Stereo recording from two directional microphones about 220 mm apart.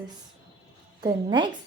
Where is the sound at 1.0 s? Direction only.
20° right (ahead or behind).